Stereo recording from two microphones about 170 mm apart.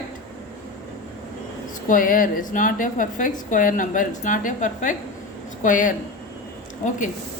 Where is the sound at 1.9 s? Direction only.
55° left (ahead or behind).